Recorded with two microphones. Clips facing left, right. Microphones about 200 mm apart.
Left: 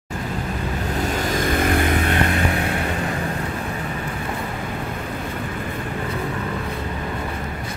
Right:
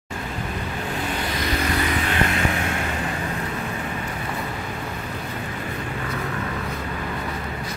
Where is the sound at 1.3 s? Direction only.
50° left (ahead or behind).